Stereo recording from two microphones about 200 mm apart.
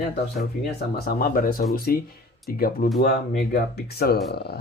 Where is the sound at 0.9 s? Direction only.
50° left (ahead or behind).